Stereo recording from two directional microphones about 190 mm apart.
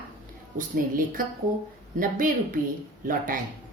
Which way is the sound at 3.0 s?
45° right (ahead or behind).